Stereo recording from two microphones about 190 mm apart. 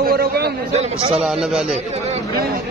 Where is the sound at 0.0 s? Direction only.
55° right (ahead or behind).